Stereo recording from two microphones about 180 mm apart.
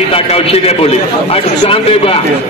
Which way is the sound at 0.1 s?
35° left (ahead or behind).